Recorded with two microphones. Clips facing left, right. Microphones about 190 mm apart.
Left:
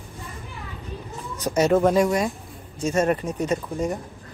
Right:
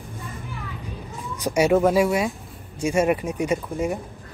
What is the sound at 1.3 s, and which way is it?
A woman's voice, 10° right (ahead or behind).